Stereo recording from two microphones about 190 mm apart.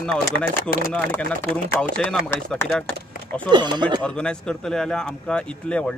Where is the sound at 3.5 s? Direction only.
25° right (ahead or behind).